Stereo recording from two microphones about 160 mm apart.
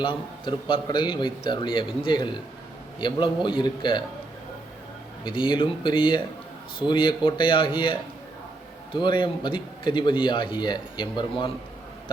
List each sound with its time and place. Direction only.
0.4 s a man's voice: 30° left (ahead or behind)
5.2 s a man's voice: 30° left (ahead or behind)